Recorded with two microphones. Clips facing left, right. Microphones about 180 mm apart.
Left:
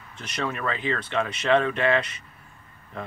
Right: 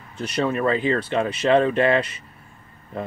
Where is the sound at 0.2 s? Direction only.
30° right (ahead or behind).